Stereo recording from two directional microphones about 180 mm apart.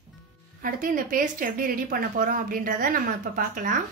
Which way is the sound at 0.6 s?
50° right (ahead or behind).